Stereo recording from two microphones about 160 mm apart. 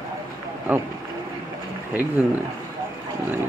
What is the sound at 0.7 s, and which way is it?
Speech, 10° right (ahead or behind).